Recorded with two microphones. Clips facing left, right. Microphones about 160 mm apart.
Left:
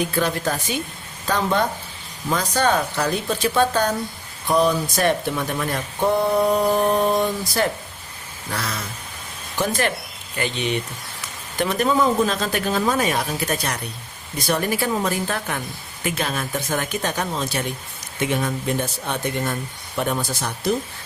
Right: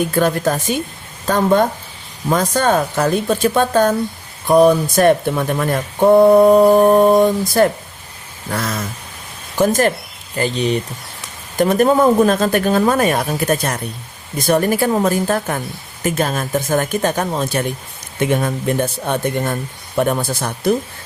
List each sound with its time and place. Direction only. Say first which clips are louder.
0.0 s speech: right 6 dB; 50° right (ahead or behind)